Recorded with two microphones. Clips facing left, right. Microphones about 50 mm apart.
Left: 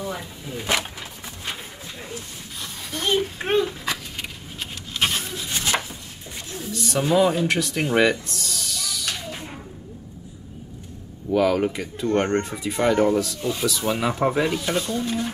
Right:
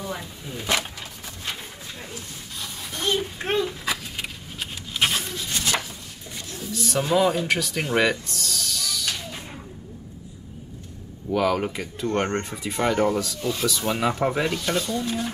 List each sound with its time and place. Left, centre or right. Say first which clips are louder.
0.0 s speech: left 2 dB; centre
3.2 s speech: left 3 dB; centre
3.6 s a sound: even; centre
5.5 s a sound: left 1 dB; left
6.7 s speech: left 1 dB; centre
11.2 s speech: left 3 dB; centre